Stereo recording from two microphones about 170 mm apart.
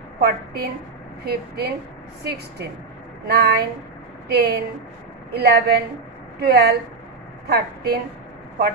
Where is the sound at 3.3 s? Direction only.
75° right (ahead or behind).